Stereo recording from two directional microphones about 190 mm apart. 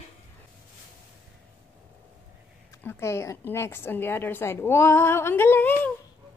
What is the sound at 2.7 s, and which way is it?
A woman's voice, 15° left (ahead or behind).